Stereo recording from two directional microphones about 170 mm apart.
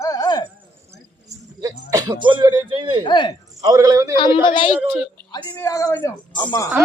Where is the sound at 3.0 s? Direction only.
25° left (ahead or behind).